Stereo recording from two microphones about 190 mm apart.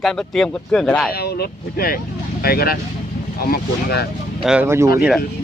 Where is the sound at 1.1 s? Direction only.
55° left (ahead or behind).